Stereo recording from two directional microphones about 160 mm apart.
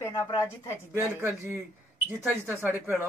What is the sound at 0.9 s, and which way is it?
A man's voice, 15° right (ahead or behind).